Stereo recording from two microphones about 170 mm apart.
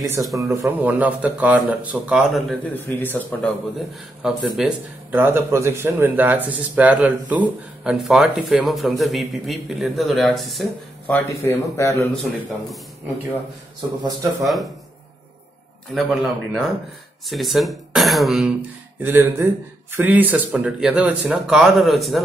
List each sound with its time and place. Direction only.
0.2 s speech: centre (ahead or behind)
0.6 s speech: 10° right (ahead or behind)
2.7 s a man's voice: 10° left (ahead or behind)
4.2 s speech: 5° right (ahead or behind)
11.1 s a man's voice: 15° left (ahead or behind)
14.4 s speech: centre (ahead or behind)
15.9 s speech: centre (ahead or behind)
18.9 s speech: 15° right (ahead or behind)